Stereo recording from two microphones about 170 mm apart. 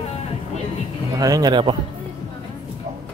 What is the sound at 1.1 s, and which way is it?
Speech, 20° right (ahead or behind).